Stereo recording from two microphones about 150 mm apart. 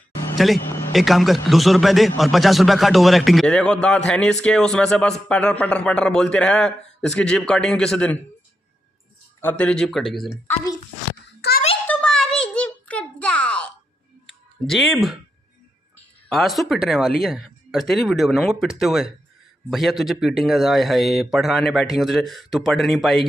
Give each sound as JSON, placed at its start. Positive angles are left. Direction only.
{"t": 0.9, "sound": "a man's voice", "side_deg": 0}
{"t": 9.4, "sound": "a man's voice", "side_deg": 10}
{"t": 11.4, "sound": "a sound", "side_deg": 90}
{"t": 11.9, "sound": "a sound", "side_deg": 5}
{"t": 14.7, "sound": "a man's voice", "side_deg": 0}
{"t": 16.3, "sound": "a man's voice", "side_deg": 0}